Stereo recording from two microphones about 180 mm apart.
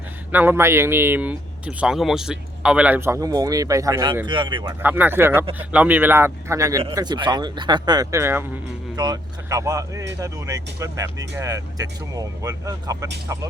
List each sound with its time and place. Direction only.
0.3 s speech: 10° right (ahead or behind); by 4.7 s 25° right (ahead or behind)
4.8 s speech: 10° right (ahead or behind)